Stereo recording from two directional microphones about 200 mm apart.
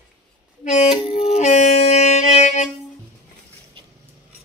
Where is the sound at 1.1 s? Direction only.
30° left (ahead or behind).